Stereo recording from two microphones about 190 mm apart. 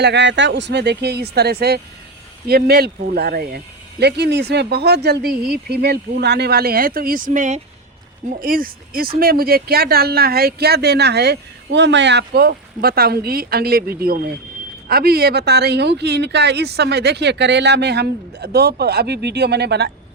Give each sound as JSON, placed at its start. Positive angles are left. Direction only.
{"t": 0.0, "sound": "speech", "side_deg": -65}